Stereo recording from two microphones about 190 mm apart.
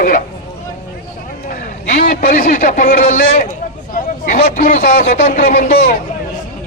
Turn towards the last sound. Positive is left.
turn(degrees=50)  # may be behind; listen again after turning